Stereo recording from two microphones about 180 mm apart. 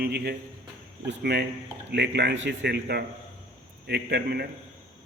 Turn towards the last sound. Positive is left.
turn(degrees=-65)  # may be behind; listen again after turning